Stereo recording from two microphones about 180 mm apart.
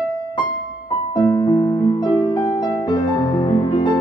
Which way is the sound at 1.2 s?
20° left (ahead or behind).